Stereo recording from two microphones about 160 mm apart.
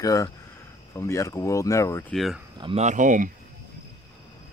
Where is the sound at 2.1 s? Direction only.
Centre (ahead or behind).